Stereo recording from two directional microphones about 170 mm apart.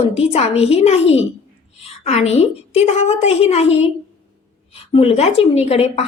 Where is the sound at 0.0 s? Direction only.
40° left (ahead or behind).